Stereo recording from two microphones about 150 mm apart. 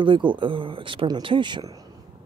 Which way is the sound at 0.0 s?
35° right (ahead or behind).